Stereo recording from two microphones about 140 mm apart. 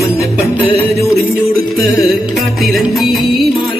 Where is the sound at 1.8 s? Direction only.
Centre (ahead or behind).